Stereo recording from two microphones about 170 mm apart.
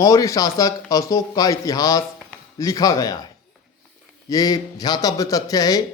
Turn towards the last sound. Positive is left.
turn(degrees=20)  # may be behind; listen again after turning